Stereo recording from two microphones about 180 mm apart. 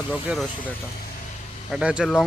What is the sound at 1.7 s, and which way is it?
Speech, 5° right (ahead or behind).